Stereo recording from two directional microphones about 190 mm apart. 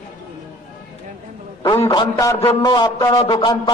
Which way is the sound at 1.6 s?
20° left (ahead or behind).